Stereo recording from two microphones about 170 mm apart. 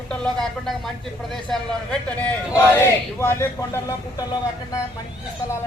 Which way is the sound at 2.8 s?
15° left (ahead or behind).